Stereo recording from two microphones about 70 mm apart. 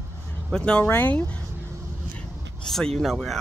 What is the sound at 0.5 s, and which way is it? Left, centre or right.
Speech, centre.